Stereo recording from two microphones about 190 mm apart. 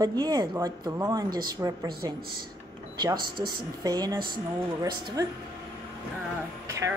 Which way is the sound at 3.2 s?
50° right (ahead or behind).